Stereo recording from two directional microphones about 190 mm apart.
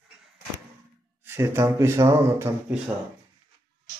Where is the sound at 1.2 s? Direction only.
15° right (ahead or behind).